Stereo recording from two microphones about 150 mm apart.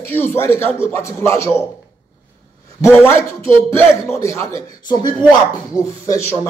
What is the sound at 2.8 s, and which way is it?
A man's voice, 15° left (ahead or behind).